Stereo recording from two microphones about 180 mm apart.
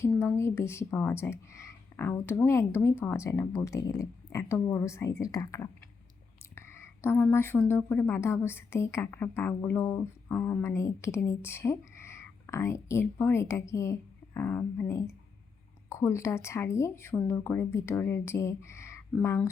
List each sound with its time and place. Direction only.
0.1 s a woman's voice: 10° left (ahead or behind)